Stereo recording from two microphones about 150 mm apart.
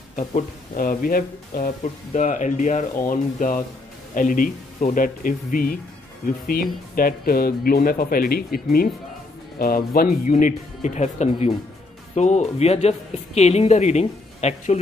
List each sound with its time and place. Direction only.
0.7 s speech: 70° left (ahead or behind)
1.8 s speech: 55° left (ahead or behind)